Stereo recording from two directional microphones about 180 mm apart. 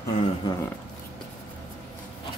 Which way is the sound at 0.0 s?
15° left (ahead or behind).